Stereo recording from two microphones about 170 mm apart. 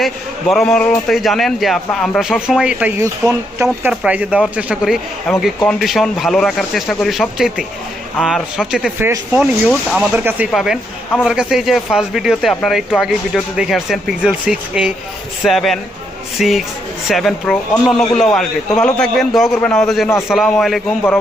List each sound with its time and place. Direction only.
0.0 s speech: centre (ahead or behind)
3.0 s speech: 15° right (ahead or behind); by 20.8 s centre (ahead or behind)